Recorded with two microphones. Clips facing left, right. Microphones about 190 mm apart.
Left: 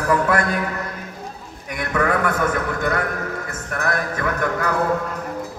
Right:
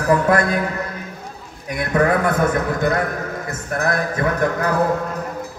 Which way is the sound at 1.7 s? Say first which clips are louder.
Right 3 dB; 35° right (ahead or behind).